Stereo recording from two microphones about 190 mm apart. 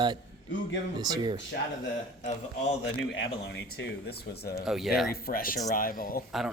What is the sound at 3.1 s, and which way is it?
Speech, 65° left (ahead or behind).